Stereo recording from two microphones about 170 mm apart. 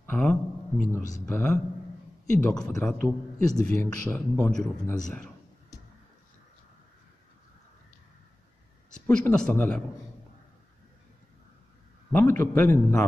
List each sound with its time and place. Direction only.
0.0 s speech: 10° left (ahead or behind)
9.0 s speech: 10° left (ahead or behind)
12.1 s speech: 10° left (ahead or behind)